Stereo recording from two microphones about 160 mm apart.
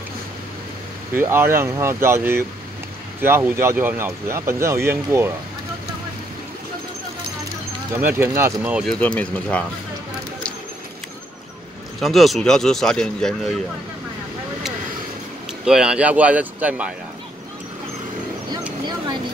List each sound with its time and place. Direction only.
1.1 s speech: 15° right (ahead or behind)
8.2 s speech: 15° right (ahead or behind)
8.8 s speech: 5° left (ahead or behind)
12.0 s speech: centre (ahead or behind)
15.6 s speech: 5° right (ahead or behind)
18.9 s vehicle: 25° right (ahead or behind)